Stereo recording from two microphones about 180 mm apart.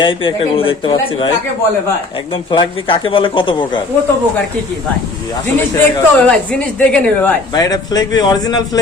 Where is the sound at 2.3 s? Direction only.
30° left (ahead or behind).